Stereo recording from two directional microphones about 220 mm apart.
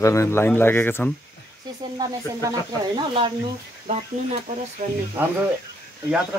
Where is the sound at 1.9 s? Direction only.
20° right (ahead or behind).